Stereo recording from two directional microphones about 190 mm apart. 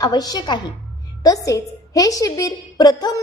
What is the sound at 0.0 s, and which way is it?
A woman's voice, 20° left (ahead or behind).